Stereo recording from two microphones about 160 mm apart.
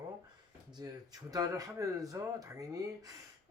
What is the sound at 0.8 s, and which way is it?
Speech, 25° right (ahead or behind).